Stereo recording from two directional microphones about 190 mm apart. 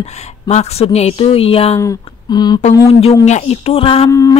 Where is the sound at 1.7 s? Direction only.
20° left (ahead or behind).